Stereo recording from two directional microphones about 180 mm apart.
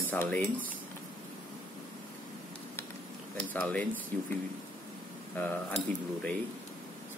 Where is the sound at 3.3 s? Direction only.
5° left (ahead or behind).